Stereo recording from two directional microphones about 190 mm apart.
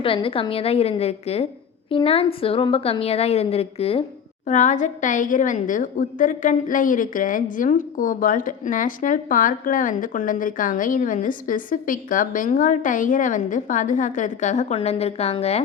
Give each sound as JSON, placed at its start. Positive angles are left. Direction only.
{"t": 0.0, "sound": "a woman's voice", "side_deg": 30}